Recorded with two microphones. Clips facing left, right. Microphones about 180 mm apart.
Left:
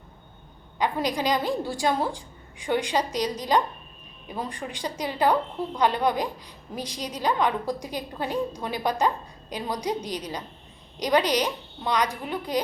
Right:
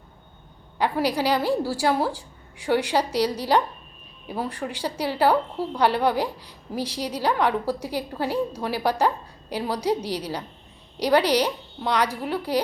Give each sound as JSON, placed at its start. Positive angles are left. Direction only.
{"t": 1.2, "sound": "a woman's voice", "side_deg": -10}